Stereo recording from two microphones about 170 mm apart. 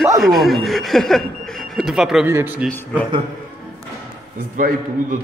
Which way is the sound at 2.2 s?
10° right (ahead or behind).